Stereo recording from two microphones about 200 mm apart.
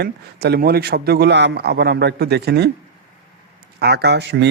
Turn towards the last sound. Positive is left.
turn(degrees=-60)  # may be behind; listen again after turning